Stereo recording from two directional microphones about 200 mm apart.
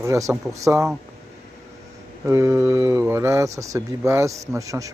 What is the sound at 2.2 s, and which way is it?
Speech, 15° right (ahead or behind).